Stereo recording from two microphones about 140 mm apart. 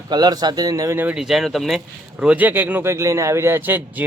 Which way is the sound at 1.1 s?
5° right (ahead or behind).